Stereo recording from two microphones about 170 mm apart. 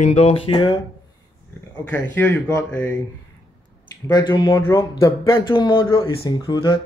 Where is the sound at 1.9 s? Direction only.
10° left (ahead or behind).